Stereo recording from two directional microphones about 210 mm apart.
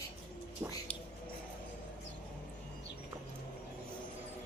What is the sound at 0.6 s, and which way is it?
Music, 15° right (ahead or behind).